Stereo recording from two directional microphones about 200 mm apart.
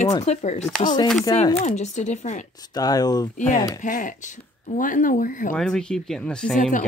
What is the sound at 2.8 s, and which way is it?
Speech, 20° left (ahead or behind).